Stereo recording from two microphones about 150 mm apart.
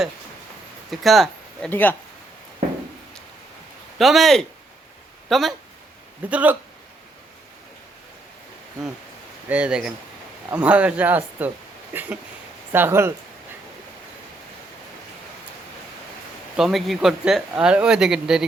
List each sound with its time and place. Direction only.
0.9 s speech: centre (ahead or behind)
1.7 s speech: 10° left (ahead or behind)
3.9 s speech: centre (ahead or behind)
9.5 s speech: 10° right (ahead or behind)
16.6 s speech: centre (ahead or behind)